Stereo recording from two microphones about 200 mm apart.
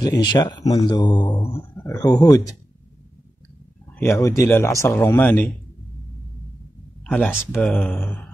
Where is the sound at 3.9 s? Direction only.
10° left (ahead or behind).